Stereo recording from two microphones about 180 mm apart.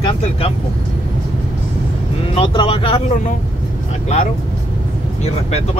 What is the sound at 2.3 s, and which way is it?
Speech, 30° left (ahead or behind).